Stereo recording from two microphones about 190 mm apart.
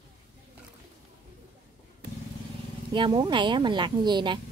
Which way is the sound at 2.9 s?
25° right (ahead or behind).